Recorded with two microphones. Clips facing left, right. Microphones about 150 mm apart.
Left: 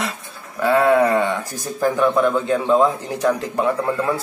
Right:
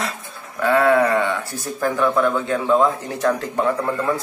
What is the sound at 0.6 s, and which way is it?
A man's voice, 15° left (ahead or behind).